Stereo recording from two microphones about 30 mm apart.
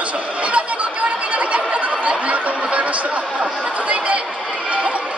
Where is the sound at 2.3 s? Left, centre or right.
Right.